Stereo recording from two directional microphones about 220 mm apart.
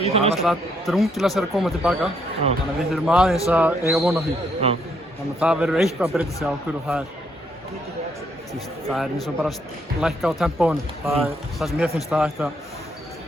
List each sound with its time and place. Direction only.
0.0 s a man's voice: 25° right (ahead or behind)
0.4 s speech: centre (ahead or behind)
4.6 s a man's voice: 30° right (ahead or behind)
5.4 s speech: 5° right (ahead or behind)
8.5 s speech: centre (ahead or behind)